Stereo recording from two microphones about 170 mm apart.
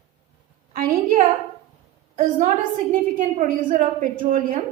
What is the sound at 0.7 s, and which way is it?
A woman's voice, 55° right (ahead or behind).